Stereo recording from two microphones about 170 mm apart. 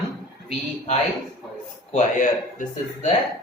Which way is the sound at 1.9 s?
50° left (ahead or behind).